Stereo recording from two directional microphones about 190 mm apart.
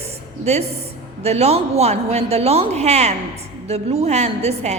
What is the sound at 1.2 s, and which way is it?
A woman's voice, 35° right (ahead or behind).